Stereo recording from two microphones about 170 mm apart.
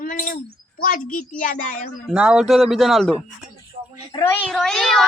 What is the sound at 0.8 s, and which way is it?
A woman's voice, 55° left (ahead or behind).